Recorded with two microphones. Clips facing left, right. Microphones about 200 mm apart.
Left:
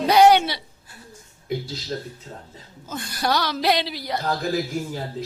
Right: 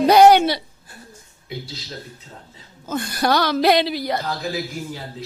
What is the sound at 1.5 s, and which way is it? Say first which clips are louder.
Speech: left 5 dB; 45° left (ahead or behind).